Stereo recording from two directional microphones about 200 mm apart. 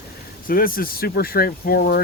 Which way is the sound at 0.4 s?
45° left (ahead or behind).